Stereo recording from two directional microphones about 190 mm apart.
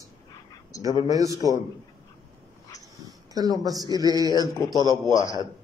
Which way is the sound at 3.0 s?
20° right (ahead or behind).